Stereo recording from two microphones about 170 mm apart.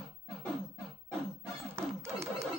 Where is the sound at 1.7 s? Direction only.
15° right (ahead or behind).